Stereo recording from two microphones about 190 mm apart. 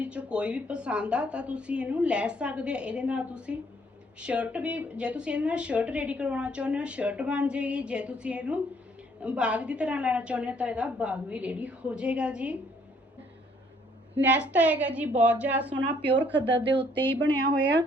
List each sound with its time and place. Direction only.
0.0 s a woman's voice: 5° right (ahead or behind)
14.2 s a woman's voice: 5° right (ahead or behind)
15.8 s speech: 60° right (ahead or behind)
16.7 s speech: 10° left (ahead or behind)